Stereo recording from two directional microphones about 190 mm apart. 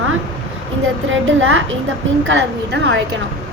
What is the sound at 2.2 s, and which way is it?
Speech, 65° right (ahead or behind).